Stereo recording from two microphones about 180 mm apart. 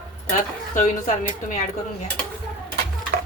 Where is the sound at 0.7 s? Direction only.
50° left (ahead or behind).